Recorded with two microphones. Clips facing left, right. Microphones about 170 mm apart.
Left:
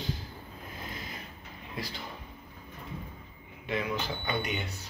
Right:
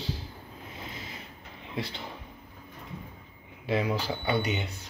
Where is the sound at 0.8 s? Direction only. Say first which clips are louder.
Even; 30° right (ahead or behind).